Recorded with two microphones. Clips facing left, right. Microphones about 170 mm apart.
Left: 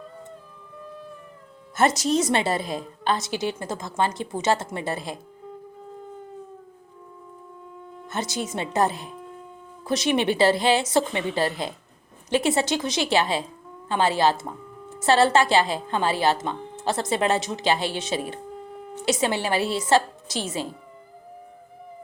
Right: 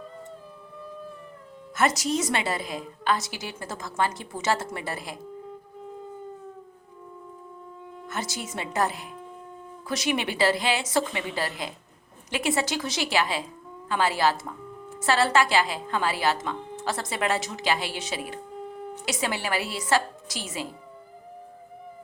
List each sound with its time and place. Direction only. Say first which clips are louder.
2.0 s a woman's voice: left 5 dB; 25° left (ahead or behind)
8.0 s a woman's voice: left 5 dB; 25° left (ahead or behind)
18.5 s a sound: right 2 dB; centre (ahead or behind)
19.0 s a woman's voice: left 6 dB; 25° left (ahead or behind)